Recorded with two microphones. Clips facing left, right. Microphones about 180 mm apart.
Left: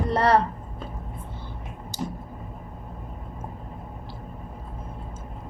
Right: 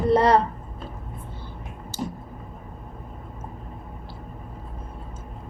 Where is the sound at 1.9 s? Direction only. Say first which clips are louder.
Right 1 dB; 15° left (ahead or behind).